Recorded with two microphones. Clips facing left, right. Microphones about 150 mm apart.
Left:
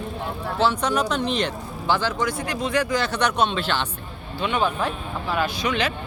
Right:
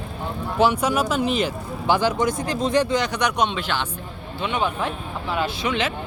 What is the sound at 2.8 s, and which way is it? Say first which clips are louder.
Speech: right 1 dB; 20° right (ahead or behind).